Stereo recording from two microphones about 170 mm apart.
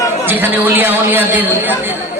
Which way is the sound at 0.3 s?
10° right (ahead or behind).